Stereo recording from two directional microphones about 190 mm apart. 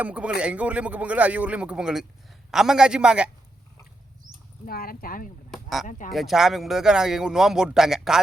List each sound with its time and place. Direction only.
0.0 s a man's voice: 5° right (ahead or behind)
4.6 s speech: 50° left (ahead or behind)
5.5 s a sound: centre (ahead or behind)
6.1 s speech: centre (ahead or behind)